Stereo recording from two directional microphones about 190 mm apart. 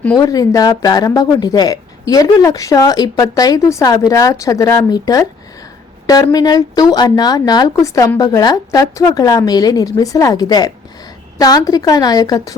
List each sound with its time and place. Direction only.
0.2 s speech: 20° left (ahead or behind)